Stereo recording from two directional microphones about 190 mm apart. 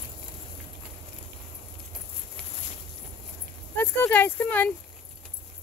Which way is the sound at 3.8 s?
10° left (ahead or behind).